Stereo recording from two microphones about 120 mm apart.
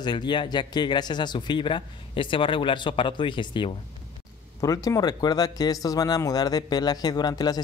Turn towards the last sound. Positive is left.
turn(degrees=35)  # may be behind; listen again after turning